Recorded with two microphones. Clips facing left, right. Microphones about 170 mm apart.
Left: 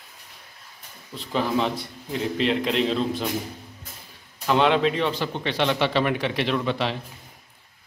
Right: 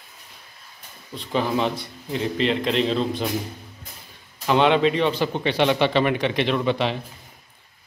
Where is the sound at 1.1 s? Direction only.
Centre (ahead or behind).